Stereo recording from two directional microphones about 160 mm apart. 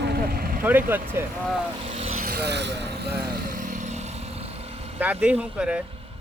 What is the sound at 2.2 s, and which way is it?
Vehicle, 90° right.